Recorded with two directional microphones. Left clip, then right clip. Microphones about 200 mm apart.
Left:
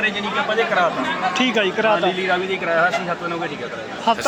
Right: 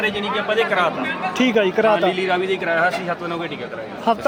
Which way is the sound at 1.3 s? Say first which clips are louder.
Right 4 dB; 60° right (ahead or behind).